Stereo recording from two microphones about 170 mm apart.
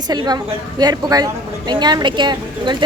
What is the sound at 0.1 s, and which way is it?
A woman's voice, 25° right (ahead or behind).